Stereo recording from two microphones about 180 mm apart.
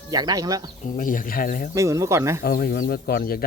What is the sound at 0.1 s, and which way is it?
Speech, 20° right (ahead or behind).